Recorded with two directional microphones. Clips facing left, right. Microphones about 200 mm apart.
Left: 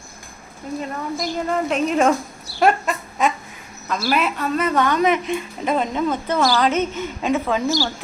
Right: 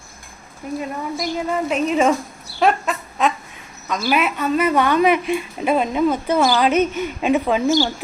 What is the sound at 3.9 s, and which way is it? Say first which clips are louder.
A woman's voice: right 1 dB; centre (ahead or behind).